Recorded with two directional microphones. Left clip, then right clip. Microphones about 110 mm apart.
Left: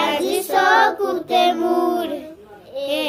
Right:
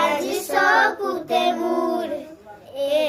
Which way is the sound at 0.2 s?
20° right (ahead or behind).